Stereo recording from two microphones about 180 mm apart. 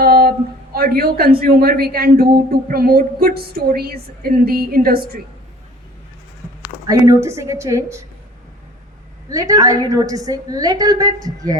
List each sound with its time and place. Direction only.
0.0 s speech: 55° right (ahead or behind)
6.8 s a woman's voice: 20° right (ahead or behind)
9.3 s a woman's voice: 20° right (ahead or behind)